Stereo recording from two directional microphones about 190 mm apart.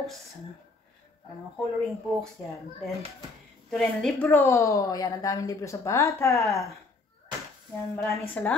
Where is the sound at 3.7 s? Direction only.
5° left (ahead or behind).